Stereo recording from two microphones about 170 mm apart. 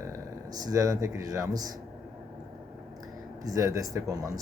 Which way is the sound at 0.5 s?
20° right (ahead or behind).